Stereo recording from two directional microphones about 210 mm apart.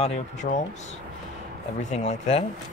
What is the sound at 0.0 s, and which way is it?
Speech, 35° left (ahead or behind).